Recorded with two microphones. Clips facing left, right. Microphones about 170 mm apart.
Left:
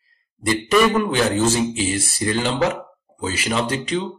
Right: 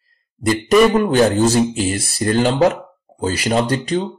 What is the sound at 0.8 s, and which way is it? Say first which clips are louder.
Speech: right 5 dB; 40° right (ahead or behind).